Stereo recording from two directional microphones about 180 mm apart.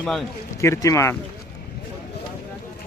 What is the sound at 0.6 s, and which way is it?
Speech, 15° left (ahead or behind).